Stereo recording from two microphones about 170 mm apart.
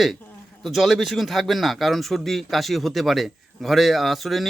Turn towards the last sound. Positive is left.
turn(degrees=0)  # may be behind; listen again after turning